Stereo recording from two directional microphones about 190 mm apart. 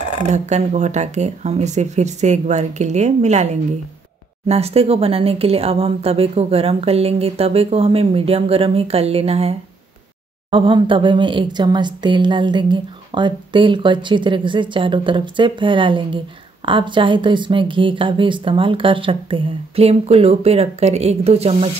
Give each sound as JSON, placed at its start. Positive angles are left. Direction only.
{"t": 0.3, "sound": "a woman's voice", "side_deg": -40}